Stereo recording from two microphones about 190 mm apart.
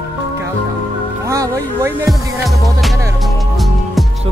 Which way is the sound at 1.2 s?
15° right (ahead or behind).